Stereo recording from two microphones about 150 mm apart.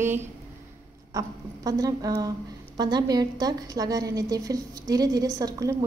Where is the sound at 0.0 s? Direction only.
15° right (ahead or behind).